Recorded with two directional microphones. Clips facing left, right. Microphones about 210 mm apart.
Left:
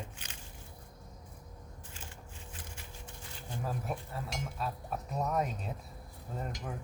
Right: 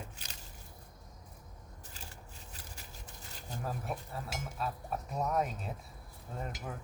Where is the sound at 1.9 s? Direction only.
40° right (ahead or behind).